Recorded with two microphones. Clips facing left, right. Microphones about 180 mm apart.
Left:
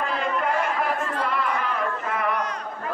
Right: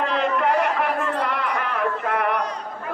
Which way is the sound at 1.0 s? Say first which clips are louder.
Right 2 dB; 70° right (ahead or behind).